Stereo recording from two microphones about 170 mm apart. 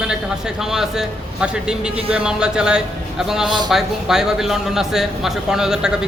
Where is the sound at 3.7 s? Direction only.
5° right (ahead or behind).